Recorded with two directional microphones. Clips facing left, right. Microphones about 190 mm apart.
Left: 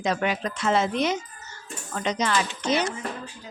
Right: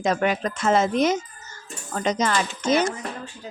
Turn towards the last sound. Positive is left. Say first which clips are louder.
# right 4 dB
turn(degrees=-45)  # may be behind; listen again after turning